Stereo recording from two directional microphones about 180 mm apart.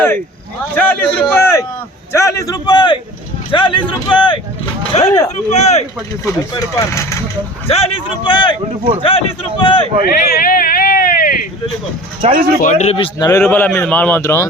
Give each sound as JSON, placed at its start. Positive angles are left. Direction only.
{"t": 0.8, "sound": "a man's voice", "side_deg": 10}
{"t": 6.2, "sound": "a man's voice", "side_deg": 15}
{"t": 7.7, "sound": "speech", "side_deg": 30}
{"t": 8.7, "sound": "speech", "side_deg": -40}
{"t": 9.0, "sound": "a man's voice", "side_deg": 30}
{"t": 10.1, "sound": "a sound", "side_deg": 55}
{"t": 12.3, "sound": "speech", "side_deg": -50}
{"t": 12.5, "sound": "a man's voice", "side_deg": 45}
{"t": 13.1, "sound": "speech", "side_deg": 20}
{"t": 13.4, "sound": "a man's voice", "side_deg": 5}